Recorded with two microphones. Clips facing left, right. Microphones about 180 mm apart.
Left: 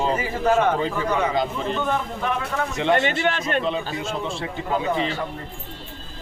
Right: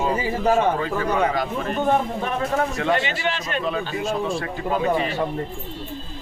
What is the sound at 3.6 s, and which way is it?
Speech, 25° left (ahead or behind).